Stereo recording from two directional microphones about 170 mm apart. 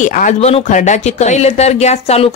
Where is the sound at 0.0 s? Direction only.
50° left (ahead or behind).